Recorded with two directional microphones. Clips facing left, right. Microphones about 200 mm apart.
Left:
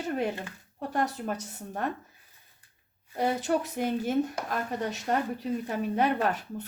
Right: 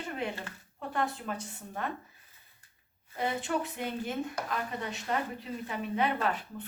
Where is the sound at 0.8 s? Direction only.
40° left (ahead or behind).